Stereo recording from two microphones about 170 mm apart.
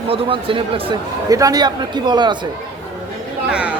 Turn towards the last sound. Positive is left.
turn(degrees=-5)  # may be behind; listen again after turning